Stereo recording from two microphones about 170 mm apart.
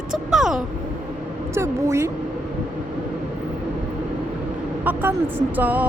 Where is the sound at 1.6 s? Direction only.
15° right (ahead or behind).